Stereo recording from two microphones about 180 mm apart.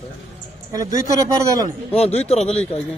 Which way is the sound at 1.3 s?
20° right (ahead or behind).